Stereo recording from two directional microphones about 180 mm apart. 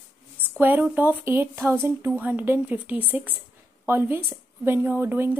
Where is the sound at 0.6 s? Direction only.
10° right (ahead or behind).